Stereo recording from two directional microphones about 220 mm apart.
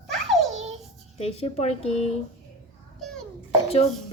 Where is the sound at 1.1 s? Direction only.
30° left (ahead or behind).